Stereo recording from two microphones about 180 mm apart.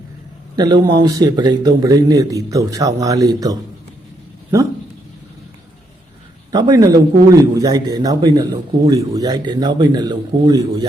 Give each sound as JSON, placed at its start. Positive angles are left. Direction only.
{"t": 0.5, "sound": "a man's voice", "side_deg": -20}
{"t": 6.5, "sound": "a man's voice", "side_deg": -20}